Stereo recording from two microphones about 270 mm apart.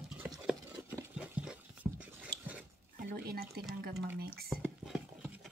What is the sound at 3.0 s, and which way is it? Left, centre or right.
Speech, right.